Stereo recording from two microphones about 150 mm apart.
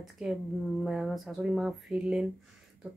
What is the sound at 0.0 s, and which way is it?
Speech, 5° right (ahead or behind).